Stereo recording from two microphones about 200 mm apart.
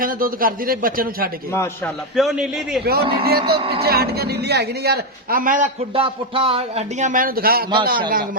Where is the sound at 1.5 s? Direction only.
10° left (ahead or behind).